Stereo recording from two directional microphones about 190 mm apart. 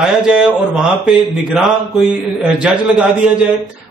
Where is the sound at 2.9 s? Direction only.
5° right (ahead or behind).